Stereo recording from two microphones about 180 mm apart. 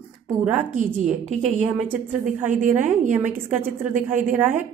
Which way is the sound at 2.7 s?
10° right (ahead or behind).